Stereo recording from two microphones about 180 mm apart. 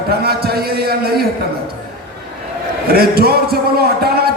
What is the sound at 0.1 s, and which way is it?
A man's voice, 60° right (ahead or behind).